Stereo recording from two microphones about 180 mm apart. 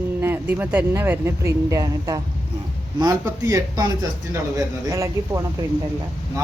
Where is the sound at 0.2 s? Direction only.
10° right (ahead or behind).